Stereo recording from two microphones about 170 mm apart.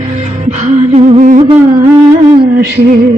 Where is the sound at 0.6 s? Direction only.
40° right (ahead or behind).